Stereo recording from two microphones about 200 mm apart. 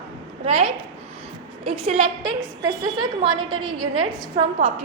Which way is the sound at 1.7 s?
30° right (ahead or behind).